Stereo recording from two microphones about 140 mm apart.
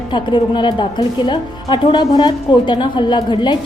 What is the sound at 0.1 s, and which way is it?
Speech, 35° left (ahead or behind).